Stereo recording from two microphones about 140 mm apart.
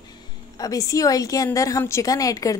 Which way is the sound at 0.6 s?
25° left (ahead or behind).